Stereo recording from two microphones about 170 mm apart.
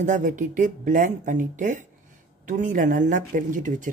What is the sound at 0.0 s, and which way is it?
Speech, 50° right (ahead or behind).